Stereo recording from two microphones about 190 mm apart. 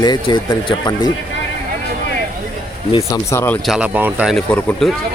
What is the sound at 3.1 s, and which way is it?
Speech, 15° left (ahead or behind).